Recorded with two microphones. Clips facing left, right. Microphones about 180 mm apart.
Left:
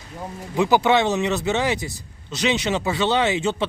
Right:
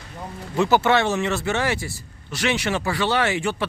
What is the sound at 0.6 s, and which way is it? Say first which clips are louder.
Speech: left 1 dB; 15° left (ahead or behind).